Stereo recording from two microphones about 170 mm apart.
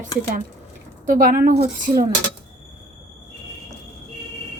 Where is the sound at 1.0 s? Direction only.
55° right (ahead or behind).